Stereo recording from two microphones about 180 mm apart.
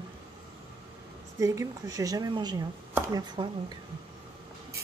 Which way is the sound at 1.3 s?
15° right (ahead or behind).